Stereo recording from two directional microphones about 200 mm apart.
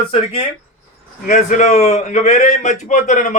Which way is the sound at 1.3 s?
40° left (ahead or behind).